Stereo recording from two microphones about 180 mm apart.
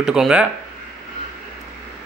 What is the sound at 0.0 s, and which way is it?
Speech, 5° right (ahead or behind).